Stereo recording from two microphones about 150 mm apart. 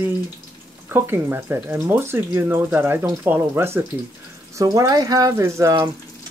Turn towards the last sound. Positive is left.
turn(degrees=-20)  # may be behind; listen again after turning